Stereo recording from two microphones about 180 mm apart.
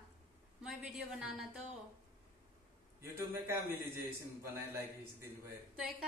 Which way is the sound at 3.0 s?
15° right (ahead or behind).